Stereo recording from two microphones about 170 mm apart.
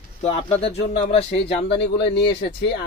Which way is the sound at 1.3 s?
90° left.